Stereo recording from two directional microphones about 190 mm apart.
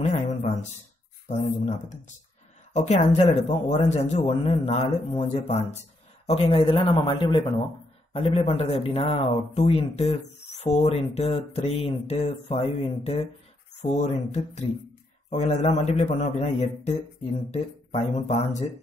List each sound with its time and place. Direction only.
0.0 s speech: 35° left (ahead or behind)